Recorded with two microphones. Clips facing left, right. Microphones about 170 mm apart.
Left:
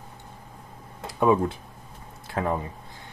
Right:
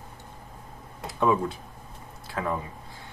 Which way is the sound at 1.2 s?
20° left (ahead or behind).